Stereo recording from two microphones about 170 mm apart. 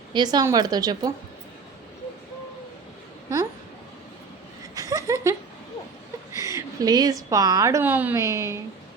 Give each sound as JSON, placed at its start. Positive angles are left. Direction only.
{"t": 0.1, "sound": "speech", "side_deg": -25}
{"t": 4.7, "sound": "a sound", "side_deg": -20}
{"t": 6.3, "sound": "a woman's voice", "side_deg": -20}